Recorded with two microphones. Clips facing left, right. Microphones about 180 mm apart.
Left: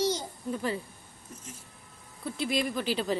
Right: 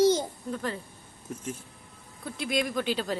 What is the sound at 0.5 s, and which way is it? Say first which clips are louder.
Speech: left 2 dB; 5° left (ahead or behind).